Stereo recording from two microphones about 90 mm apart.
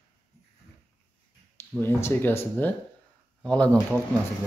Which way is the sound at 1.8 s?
25° left (ahead or behind).